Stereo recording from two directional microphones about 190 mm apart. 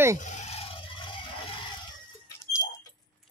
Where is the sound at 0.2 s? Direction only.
40° left (ahead or behind).